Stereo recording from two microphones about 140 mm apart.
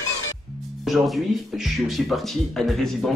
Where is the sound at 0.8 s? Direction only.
Centre (ahead or behind).